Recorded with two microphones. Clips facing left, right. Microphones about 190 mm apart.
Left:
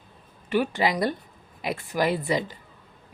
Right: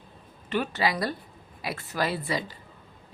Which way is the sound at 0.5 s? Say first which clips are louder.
Left 3 dB; 15° left (ahead or behind).